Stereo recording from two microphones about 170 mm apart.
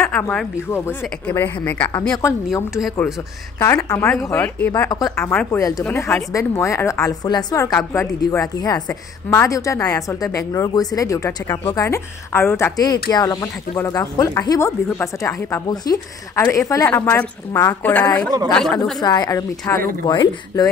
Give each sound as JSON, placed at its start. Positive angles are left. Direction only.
{"t": 0.0, "sound": "a woman's voice", "side_deg": 10}
{"t": 3.5, "sound": "a woman's voice", "side_deg": 15}
{"t": 4.1, "sound": "a woman's voice", "side_deg": 5}
{"t": 4.9, "sound": "a woman's voice", "side_deg": 20}
{"t": 5.3, "sound": "a woman's voice", "side_deg": 5}
{"t": 5.6, "sound": "a woman's voice", "side_deg": 20}
{"t": 18.9, "sound": "a woman's voice", "side_deg": 25}